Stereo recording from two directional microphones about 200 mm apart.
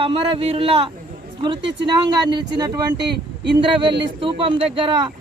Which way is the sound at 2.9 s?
55° right (ahead or behind).